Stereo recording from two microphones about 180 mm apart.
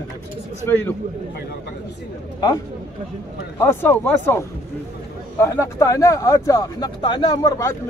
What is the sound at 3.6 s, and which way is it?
Speech, 10° left (ahead or behind).